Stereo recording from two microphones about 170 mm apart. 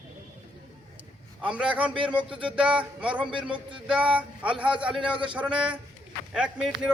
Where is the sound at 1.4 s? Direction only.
5° right (ahead or behind).